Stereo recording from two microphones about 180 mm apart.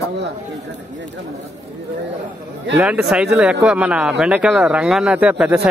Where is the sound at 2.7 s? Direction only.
5° right (ahead or behind).